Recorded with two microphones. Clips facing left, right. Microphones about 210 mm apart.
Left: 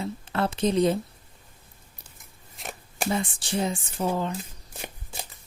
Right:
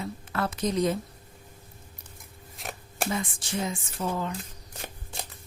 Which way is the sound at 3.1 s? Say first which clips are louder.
Left 6 dB; 30° left (ahead or behind).